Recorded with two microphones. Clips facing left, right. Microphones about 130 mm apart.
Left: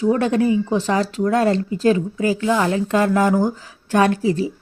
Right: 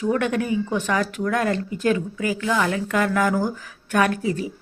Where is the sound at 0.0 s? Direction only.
30° left (ahead or behind).